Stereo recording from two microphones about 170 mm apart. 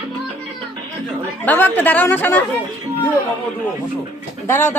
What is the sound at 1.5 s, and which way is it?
Speech, 10° left (ahead or behind).